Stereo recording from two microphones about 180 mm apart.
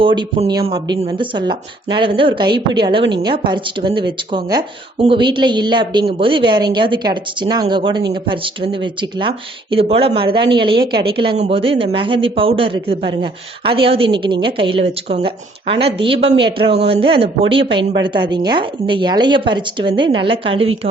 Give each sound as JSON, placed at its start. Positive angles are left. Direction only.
{"t": 0.0, "sound": "speech", "side_deg": -30}